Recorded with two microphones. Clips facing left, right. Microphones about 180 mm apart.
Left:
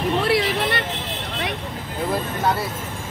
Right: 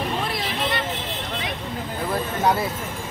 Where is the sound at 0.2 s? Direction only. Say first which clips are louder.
Left 6 dB; 75° left (ahead or behind).